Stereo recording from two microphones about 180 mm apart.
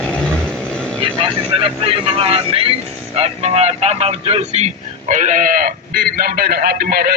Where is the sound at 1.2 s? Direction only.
30° right (ahead or behind).